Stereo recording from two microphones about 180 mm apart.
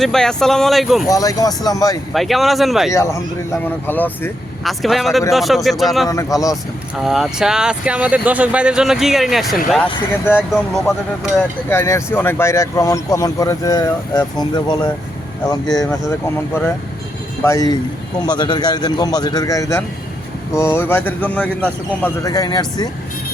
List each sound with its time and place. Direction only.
0.0 s speech: 5° left (ahead or behind)
1.0 s speech: 20° left (ahead or behind)
2.1 s speech: centre (ahead or behind)
2.9 s speech: 15° left (ahead or behind); by 6.1 s centre (ahead or behind)
6.1 s speech: 20° left (ahead or behind)
7.0 s speech: centre (ahead or behind)
11.7 s speech: 15° left (ahead or behind)
17.4 s speech: 20° left (ahead or behind)